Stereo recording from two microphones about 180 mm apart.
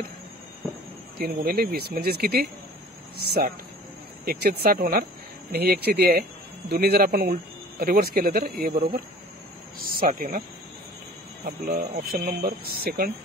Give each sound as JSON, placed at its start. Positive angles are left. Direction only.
{"t": 1.1, "sound": "speech", "side_deg": -60}
{"t": 11.4, "sound": "speech", "side_deg": -50}